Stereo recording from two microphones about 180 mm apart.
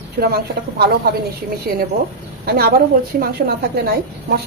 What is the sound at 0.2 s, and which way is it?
Speech, 60° right (ahead or behind).